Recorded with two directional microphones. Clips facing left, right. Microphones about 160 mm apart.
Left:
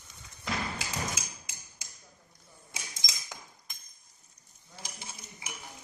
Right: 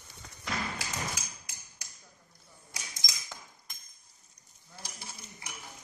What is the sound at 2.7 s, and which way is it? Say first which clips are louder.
Mechanisms: left 1 dB; 25° left (ahead or behind).